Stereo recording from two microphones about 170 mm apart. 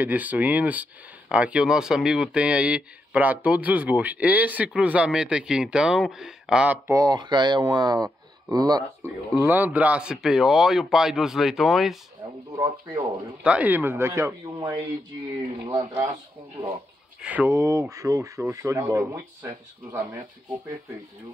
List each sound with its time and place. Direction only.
0.0 s speech: 10° right (ahead or behind)
6.9 s speech: 25° right (ahead or behind)
9.3 s speech: 10° right (ahead or behind)
13.4 s speech: 10° right (ahead or behind)
17.2 s speech: 10° right (ahead or behind)